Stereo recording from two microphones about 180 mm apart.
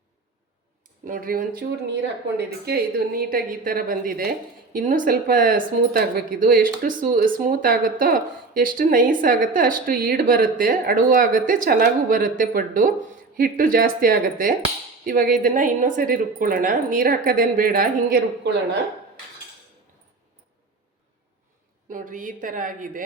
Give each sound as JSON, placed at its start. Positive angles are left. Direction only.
{"t": 1.0, "sound": "speech", "side_deg": -50}
{"t": 21.8, "sound": "speech", "side_deg": -50}